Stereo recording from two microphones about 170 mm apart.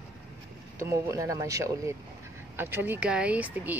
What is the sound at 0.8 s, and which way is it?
Speech, 15° right (ahead or behind).